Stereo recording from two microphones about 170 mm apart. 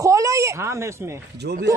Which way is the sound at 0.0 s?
20° right (ahead or behind).